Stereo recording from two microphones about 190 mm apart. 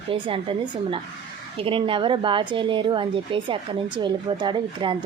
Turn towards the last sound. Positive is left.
turn(degrees=-25)  # may be behind; listen again after turning